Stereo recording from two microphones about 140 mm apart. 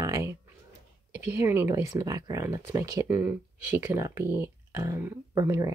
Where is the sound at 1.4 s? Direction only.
20° right (ahead or behind).